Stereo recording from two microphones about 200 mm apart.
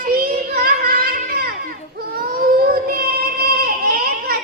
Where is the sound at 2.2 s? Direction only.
45° right (ahead or behind).